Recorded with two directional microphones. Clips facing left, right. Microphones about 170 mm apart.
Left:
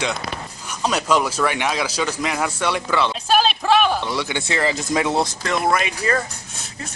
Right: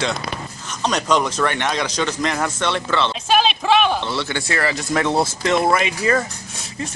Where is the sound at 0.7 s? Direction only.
5° left (ahead or behind).